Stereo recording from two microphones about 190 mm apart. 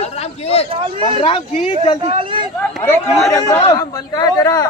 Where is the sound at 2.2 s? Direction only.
25° right (ahead or behind).